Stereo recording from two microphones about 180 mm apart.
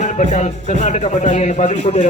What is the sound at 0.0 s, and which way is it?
A man's voice, 40° left (ahead or behind).